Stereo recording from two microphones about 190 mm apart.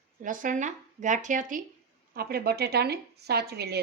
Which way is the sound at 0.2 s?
45° right (ahead or behind).